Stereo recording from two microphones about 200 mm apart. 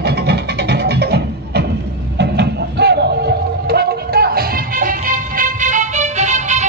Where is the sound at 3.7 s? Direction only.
50° right (ahead or behind).